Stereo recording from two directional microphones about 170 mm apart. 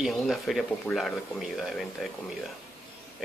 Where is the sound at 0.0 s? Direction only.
Centre (ahead or behind).